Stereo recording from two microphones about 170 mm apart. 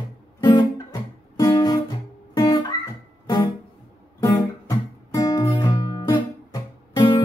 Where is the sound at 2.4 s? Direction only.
25° left (ahead or behind).